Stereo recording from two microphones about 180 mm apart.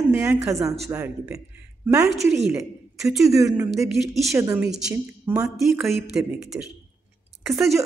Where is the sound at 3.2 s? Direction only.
20° right (ahead or behind).